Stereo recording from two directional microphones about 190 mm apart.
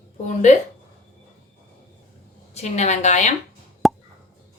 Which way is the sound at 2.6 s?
35° left (ahead or behind).